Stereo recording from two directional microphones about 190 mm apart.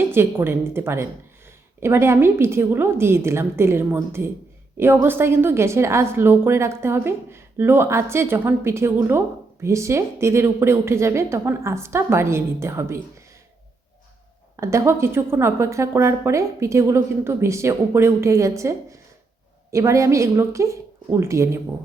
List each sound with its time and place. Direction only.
0.1 s a woman's voice: 10° right (ahead or behind)
14.5 s a woman's voice: 15° right (ahead or behind)